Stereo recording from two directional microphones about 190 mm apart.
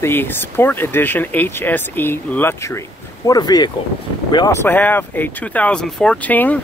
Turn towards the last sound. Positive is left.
turn(degrees=10)  # may be behind; listen again after turning